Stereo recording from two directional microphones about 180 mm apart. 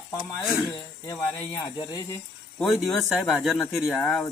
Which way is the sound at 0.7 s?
20° left (ahead or behind).